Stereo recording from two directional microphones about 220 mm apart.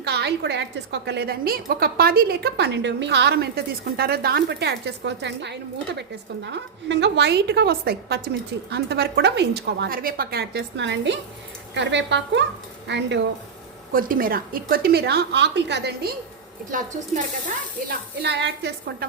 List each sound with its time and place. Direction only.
0.0 s a woman's voice: 50° right (ahead or behind)
13.9 s a woman's voice: 40° right (ahead or behind)
16.7 s a woman's voice: 40° right (ahead or behind)
17.8 s a woman's voice: 50° right (ahead or behind)